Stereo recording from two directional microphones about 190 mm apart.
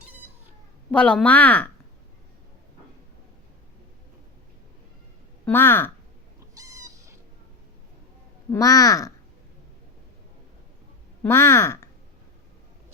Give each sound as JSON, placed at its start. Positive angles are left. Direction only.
{"t": 0.9, "sound": "speech", "side_deg": 5}
{"t": 5.5, "sound": "speech", "side_deg": 10}
{"t": 6.6, "sound": "cat", "side_deg": -15}
{"t": 8.4, "sound": "speech", "side_deg": 20}
{"t": 11.2, "sound": "speech", "side_deg": 15}